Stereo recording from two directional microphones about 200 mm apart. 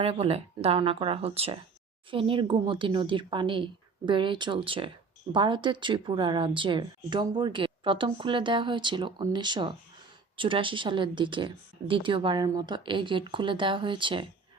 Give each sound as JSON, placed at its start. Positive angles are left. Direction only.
{"t": 0.0, "sound": "speech", "side_deg": -30}